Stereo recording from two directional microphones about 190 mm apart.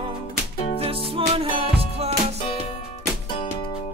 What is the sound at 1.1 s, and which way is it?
Music, 30° right (ahead or behind).